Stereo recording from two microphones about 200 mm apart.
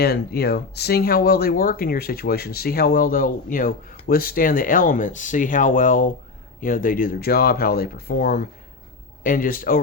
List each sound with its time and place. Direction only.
0.0 s speech: 55° left (ahead or behind)